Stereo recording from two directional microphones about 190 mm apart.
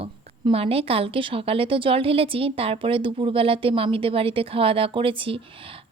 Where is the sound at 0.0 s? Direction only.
30° right (ahead or behind).